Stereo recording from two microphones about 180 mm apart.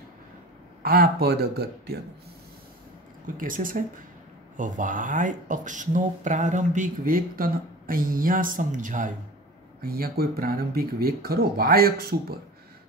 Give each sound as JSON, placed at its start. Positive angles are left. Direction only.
{"t": 0.8, "sound": "speech", "side_deg": -60}
{"t": 3.3, "sound": "speech", "side_deg": -50}
{"t": 9.8, "sound": "speech", "side_deg": -55}